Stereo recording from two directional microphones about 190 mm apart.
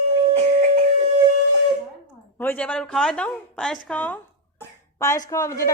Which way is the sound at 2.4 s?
10° left (ahead or behind).